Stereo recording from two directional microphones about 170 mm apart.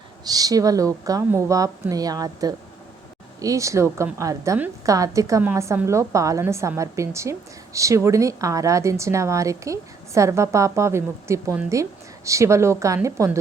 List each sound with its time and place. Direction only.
0.3 s a woman's voice: 20° right (ahead or behind)